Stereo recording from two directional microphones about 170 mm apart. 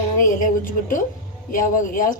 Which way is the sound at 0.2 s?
50° left (ahead or behind).